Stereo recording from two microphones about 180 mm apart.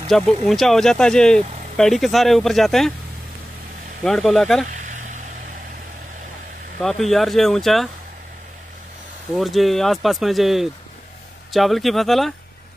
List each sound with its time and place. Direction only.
0.1 s speech: centre (ahead or behind)
4.0 s speech: centre (ahead or behind)
4.7 s vehicle: 45° right (ahead or behind)
6.8 s speech: centre (ahead or behind)
9.3 s speech: centre (ahead or behind)